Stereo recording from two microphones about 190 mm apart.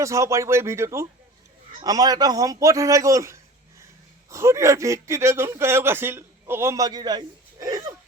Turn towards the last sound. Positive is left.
turn(degrees=-20)  # may be behind; listen again after turning